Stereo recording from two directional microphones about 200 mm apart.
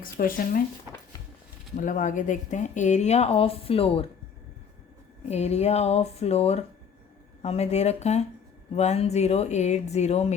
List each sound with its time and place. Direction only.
0.0 s speech: 45° left (ahead or behind)
1.7 s speech: 40° left (ahead or behind)
5.3 s speech: 35° left (ahead or behind)